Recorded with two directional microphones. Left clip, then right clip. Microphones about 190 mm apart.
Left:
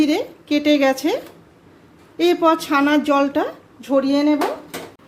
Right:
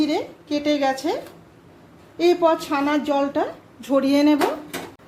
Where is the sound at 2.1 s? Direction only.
25° left (ahead or behind).